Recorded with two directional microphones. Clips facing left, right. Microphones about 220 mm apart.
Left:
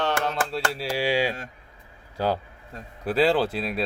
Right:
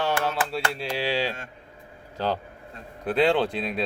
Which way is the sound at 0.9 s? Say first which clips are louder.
Left 3 dB; 10° left (ahead or behind).